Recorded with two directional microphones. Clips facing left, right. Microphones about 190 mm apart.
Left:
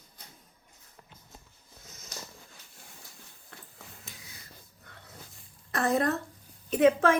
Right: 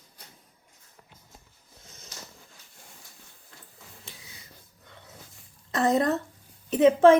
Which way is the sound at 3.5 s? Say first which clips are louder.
Left 3 dB; 60° left (ahead or behind).